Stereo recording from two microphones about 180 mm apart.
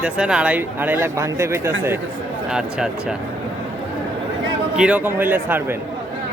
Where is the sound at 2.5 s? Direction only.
5° right (ahead or behind).